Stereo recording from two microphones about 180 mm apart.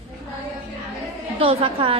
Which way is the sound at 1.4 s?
30° right (ahead or behind).